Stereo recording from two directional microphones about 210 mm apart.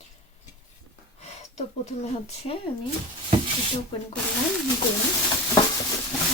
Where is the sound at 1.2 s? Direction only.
30° left (ahead or behind).